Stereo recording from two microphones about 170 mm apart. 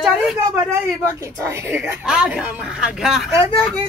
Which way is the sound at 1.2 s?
15° right (ahead or behind).